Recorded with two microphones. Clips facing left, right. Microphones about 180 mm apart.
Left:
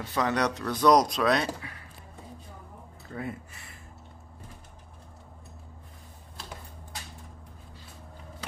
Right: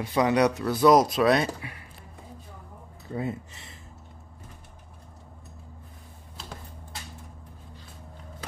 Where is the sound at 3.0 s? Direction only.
20° right (ahead or behind).